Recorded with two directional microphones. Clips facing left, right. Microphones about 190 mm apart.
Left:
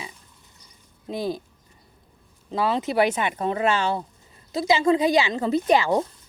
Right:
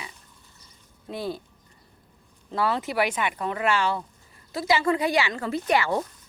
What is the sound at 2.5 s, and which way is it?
A woman's voice, 20° left (ahead or behind).